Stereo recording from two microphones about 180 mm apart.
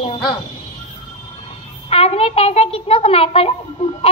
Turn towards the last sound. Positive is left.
turn(degrees=30)  # may be behind; listen again after turning